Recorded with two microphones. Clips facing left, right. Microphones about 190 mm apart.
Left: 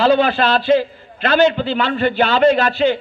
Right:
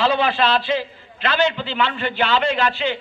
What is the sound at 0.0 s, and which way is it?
A man's voice, 45° left (ahead or behind).